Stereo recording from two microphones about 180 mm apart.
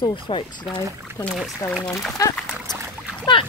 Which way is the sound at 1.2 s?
Centre (ahead or behind).